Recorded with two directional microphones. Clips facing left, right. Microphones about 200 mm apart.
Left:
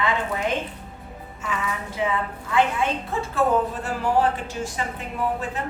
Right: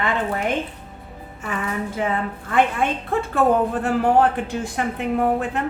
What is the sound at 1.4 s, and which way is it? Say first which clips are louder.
A woman's voice: right 3 dB; 50° right (ahead or behind).